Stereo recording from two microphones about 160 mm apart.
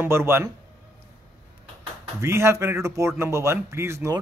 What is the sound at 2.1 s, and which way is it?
A man's voice, 15° right (ahead or behind).